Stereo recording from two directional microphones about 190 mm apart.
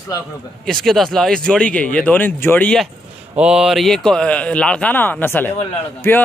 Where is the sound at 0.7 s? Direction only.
Centre (ahead or behind).